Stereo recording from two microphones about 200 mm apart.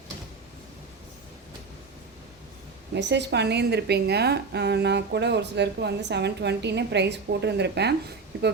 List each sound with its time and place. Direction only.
2.9 s a woman's voice: 60° right (ahead or behind)